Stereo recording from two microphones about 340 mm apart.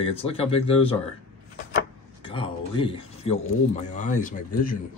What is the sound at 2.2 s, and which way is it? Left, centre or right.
Speech, centre.